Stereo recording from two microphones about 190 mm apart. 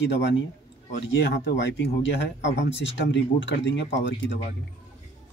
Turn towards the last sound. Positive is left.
turn(degrees=70)  # may be behind; listen again after turning